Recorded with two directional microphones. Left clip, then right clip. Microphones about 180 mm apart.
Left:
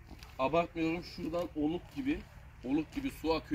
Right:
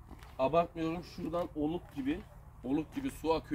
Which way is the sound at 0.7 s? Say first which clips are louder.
Left 2 dB; 10° left (ahead or behind).